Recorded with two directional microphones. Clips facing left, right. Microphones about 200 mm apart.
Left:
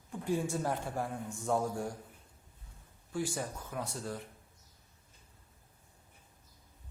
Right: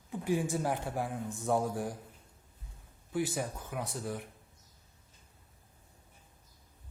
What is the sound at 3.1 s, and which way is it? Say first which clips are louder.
Speech: right 3 dB; 20° right (ahead or behind).